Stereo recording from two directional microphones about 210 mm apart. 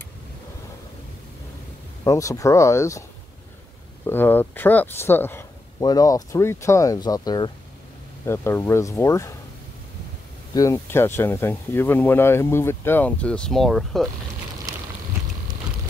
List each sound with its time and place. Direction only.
2.0 s speech: 15° left (ahead or behind)
4.0 s speech: 10° left (ahead or behind)
10.5 s speech: 15° left (ahead or behind)
14.7 s vehicle: 15° right (ahead or behind)